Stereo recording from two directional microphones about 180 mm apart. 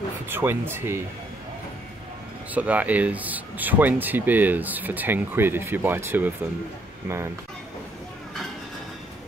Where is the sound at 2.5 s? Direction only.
10° right (ahead or behind).